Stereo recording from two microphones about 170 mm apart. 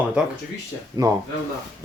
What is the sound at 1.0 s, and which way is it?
Speech, 25° right (ahead or behind).